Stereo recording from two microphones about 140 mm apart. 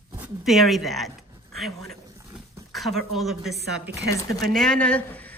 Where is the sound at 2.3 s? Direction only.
Centre (ahead or behind).